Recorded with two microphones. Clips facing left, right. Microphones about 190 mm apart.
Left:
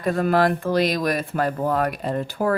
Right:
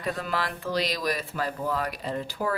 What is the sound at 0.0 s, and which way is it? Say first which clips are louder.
Speech: left 11 dB; 50° left (ahead or behind).